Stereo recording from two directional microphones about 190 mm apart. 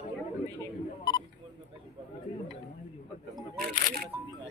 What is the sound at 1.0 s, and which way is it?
Speech, 20° left (ahead or behind).